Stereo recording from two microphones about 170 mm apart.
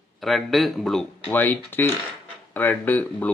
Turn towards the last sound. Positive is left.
turn(degrees=10)  # may be behind; listen again after turning